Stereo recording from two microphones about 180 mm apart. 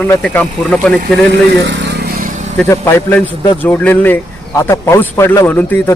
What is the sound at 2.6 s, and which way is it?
A man's voice, 15° left (ahead or behind).